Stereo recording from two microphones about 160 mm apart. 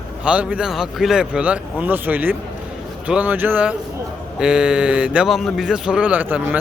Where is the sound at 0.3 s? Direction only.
5° right (ahead or behind).